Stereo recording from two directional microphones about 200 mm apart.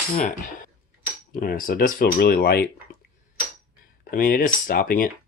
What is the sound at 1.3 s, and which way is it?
Cutlery, 45° left (ahead or behind).